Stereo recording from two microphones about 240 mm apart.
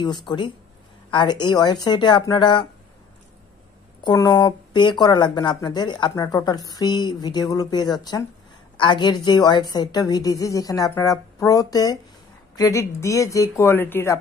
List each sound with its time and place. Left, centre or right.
0.0 s speech: centre
4.0 s speech: centre